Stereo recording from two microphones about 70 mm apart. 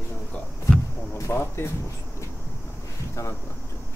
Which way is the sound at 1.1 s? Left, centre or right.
Left.